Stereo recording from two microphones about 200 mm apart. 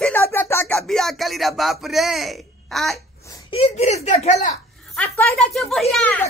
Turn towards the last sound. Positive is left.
turn(degrees=10)  # may be behind; listen again after turning